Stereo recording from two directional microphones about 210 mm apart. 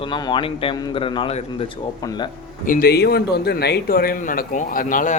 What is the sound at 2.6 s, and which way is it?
A man's voice, 40° left (ahead or behind).